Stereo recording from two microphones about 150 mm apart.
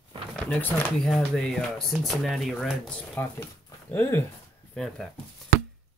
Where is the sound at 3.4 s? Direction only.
15° left (ahead or behind).